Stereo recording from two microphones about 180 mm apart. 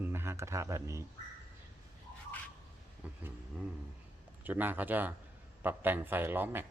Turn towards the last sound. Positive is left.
turn(degrees=-10)  # may be behind; listen again after turning